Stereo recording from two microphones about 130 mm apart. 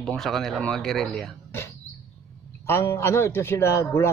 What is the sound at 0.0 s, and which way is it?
Speech, centre (ahead or behind).